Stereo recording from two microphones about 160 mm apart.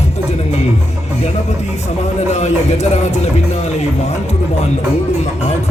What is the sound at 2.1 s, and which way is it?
Speech, 45° left (ahead or behind).